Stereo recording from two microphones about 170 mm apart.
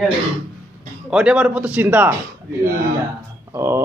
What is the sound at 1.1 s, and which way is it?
Speech, 5° right (ahead or behind).